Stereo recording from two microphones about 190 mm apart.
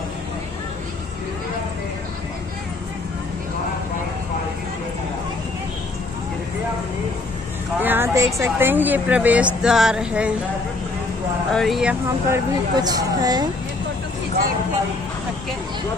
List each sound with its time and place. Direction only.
7.8 s a woman's voice: 10° right (ahead or behind)
11.5 s speech: centre (ahead or behind)
12.7 s speech: 20° right (ahead or behind)